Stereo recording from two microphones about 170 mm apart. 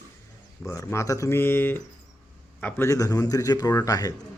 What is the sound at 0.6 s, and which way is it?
A man's voice, 15° left (ahead or behind).